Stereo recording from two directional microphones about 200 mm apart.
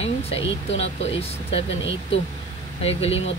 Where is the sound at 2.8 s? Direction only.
30° left (ahead or behind).